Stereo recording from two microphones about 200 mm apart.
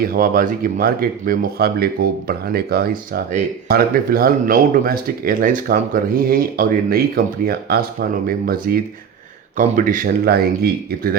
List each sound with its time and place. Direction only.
0.0 s speech: 45° right (ahead or behind)
8.3 s speech: 50° right (ahead or behind)